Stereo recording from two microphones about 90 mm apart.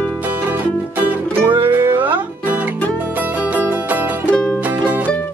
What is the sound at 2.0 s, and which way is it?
Music, 20° right (ahead or behind).